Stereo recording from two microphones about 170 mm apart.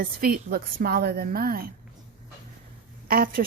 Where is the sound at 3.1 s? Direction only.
60° right (ahead or behind).